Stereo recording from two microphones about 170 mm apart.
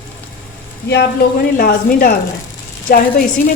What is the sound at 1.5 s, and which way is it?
A woman's voice, 55° left (ahead or behind).